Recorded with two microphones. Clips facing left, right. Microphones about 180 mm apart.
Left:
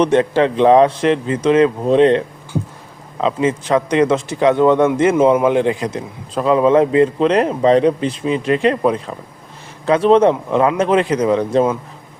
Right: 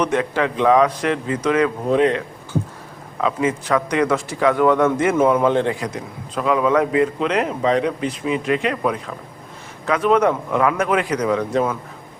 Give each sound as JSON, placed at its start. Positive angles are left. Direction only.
{"t": 0.0, "sound": "a man's voice", "side_deg": 30}